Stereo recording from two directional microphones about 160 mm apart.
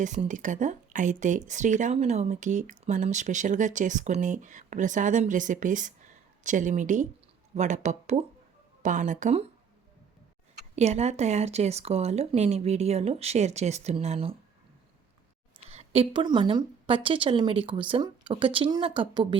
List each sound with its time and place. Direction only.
0.0 s speech: 50° right (ahead or behind)
8.8 s speech: 50° right (ahead or behind)
10.8 s speech: 45° right (ahead or behind)
15.5 s a woman's voice: 40° right (ahead or behind)